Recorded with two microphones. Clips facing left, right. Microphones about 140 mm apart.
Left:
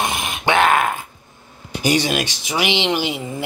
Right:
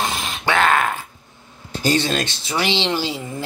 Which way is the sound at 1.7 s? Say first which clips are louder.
Left 1 dB; 15° left (ahead or behind).